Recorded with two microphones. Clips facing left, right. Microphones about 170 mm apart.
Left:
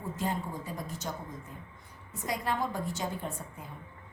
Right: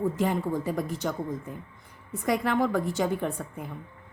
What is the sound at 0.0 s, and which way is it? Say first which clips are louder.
A woman's voice: right 8 dB; 70° right (ahead or behind).